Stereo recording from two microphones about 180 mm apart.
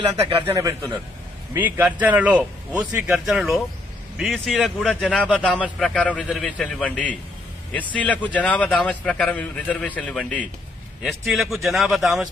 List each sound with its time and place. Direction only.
0.6 s a man's voice: 20° right (ahead or behind)
1.5 s a man's voice: 10° right (ahead or behind)